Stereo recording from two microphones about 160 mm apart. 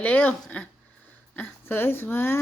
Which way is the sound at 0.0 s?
10° left (ahead or behind).